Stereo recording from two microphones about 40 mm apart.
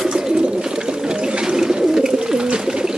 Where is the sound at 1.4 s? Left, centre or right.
Centre.